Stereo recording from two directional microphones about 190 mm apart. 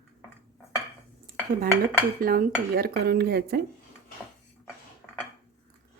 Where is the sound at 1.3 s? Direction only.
45° right (ahead or behind).